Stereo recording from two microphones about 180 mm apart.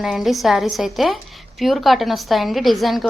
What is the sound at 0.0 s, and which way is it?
A woman's voice, centre (ahead or behind).